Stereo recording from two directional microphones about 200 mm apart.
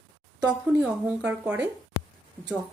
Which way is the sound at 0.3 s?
5° right (ahead or behind).